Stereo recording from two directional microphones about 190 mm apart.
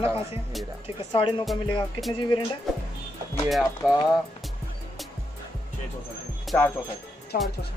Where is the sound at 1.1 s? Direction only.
30° left (ahead or behind).